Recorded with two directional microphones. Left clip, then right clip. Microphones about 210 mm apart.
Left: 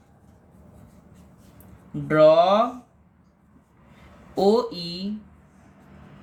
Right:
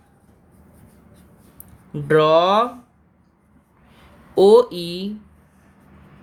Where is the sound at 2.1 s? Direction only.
50° right (ahead or behind).